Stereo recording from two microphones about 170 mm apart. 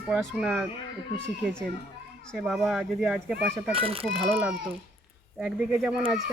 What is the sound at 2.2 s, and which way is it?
A child's voice, centre (ahead or behind).